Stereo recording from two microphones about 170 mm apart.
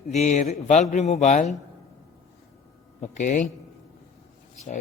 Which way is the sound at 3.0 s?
45° left (ahead or behind).